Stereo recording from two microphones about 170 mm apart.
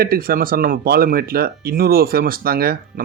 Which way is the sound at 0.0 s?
60° right (ahead or behind).